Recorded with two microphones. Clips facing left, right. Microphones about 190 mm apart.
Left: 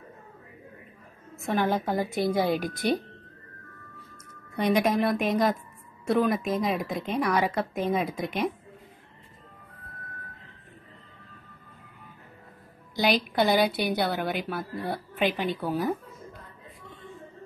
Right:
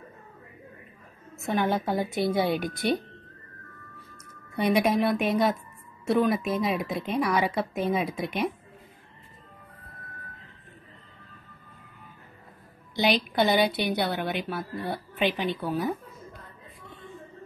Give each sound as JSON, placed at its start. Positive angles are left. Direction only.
{"t": 1.4, "sound": "a woman's voice", "side_deg": 0}
{"t": 4.7, "sound": "a woman's voice", "side_deg": 0}
{"t": 12.9, "sound": "a woman's voice", "side_deg": 0}